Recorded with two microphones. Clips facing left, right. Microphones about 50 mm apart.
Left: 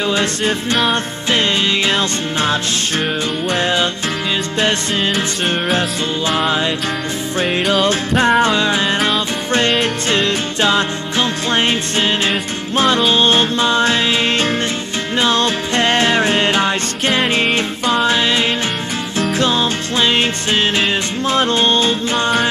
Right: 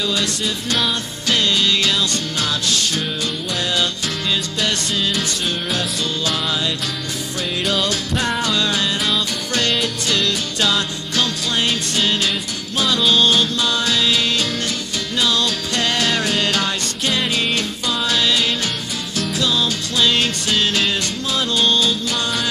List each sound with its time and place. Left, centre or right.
0.0 s music: left
3.5 s music: left